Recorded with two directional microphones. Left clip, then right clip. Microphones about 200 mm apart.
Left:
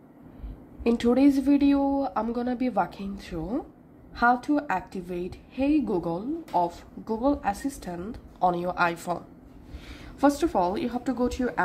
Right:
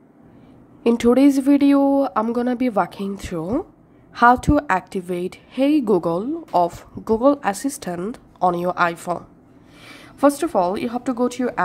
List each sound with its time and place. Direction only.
0.8 s a woman's voice: 25° right (ahead or behind)